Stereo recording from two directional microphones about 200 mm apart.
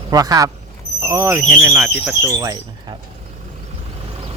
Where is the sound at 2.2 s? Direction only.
20° right (ahead or behind).